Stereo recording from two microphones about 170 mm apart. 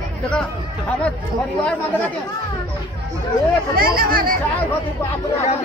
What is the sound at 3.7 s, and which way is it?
Speech, 60° right (ahead or behind).